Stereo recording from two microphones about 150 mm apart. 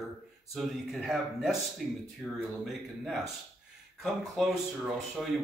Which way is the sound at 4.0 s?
Centre (ahead or behind).